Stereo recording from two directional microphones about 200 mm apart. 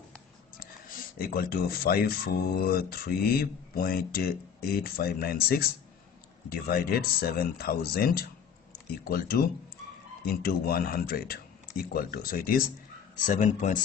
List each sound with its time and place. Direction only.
0.6 s speech: 45° left (ahead or behind)